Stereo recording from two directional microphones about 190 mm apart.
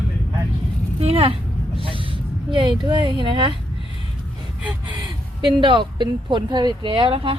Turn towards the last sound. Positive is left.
turn(degrees=-30)  # may be behind; listen again after turning